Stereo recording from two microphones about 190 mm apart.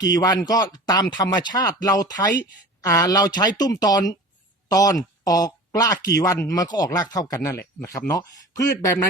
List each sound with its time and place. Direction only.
0.1 s speech: 20° left (ahead or behind)